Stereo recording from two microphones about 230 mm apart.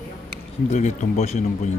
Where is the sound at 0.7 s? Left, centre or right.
Left.